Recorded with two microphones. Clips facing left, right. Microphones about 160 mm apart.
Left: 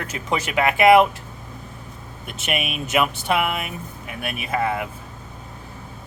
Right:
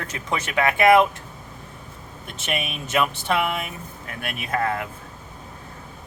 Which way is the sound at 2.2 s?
10° left (ahead or behind).